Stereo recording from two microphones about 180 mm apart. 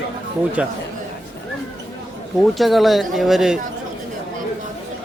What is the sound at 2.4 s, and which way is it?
A man's voice, centre (ahead or behind).